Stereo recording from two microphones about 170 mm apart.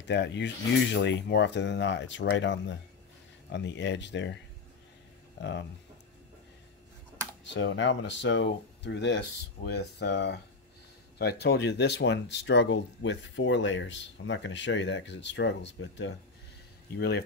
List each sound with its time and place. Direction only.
0.0 s speech: 90° left
5.4 s speech: 90° left
7.4 s speech: 90° left
11.1 s speech: 70° left (ahead or behind); by 16.1 s 90° left
16.9 s speech: 80° left